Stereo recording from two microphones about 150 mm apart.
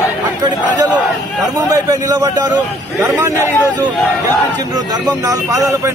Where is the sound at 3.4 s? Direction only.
15° left (ahead or behind).